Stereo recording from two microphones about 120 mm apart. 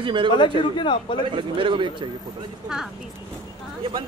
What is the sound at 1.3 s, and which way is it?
Speech, 45° right (ahead or behind).